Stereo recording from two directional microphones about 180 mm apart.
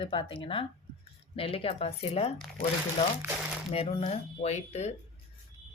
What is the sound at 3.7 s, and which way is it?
Speech, 30° left (ahead or behind).